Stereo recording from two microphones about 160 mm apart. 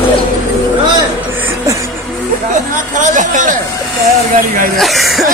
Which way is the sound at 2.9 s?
50° right (ahead or behind).